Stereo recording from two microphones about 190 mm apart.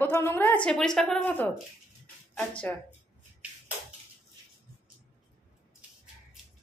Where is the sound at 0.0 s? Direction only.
10° left (ahead or behind).